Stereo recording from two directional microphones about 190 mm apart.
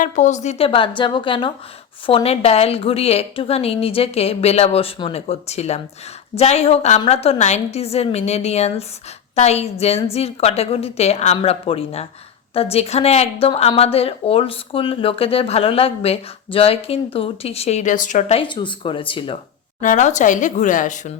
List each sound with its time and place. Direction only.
0.0 s a woman's voice: 40° left (ahead or behind)
19.8 s a woman's voice: 40° left (ahead or behind)